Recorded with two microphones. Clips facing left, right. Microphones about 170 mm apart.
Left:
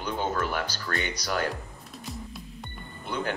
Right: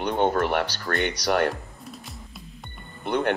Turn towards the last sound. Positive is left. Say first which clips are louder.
# right 7 dB
turn(degrees=-65)  # may be behind; listen again after turning